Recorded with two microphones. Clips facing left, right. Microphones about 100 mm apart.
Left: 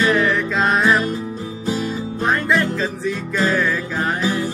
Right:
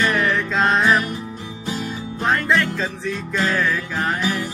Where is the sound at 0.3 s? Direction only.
5° left (ahead or behind).